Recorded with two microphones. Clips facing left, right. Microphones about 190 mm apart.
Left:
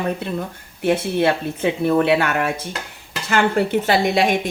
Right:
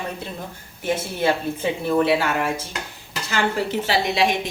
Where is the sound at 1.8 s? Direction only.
60° left (ahead or behind).